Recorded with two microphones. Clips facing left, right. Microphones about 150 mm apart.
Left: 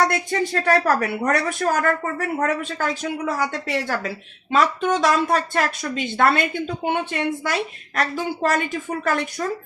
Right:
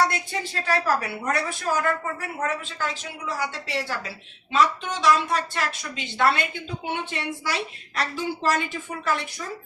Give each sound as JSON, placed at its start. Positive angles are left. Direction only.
{"t": 0.1, "sound": "speech", "side_deg": 55}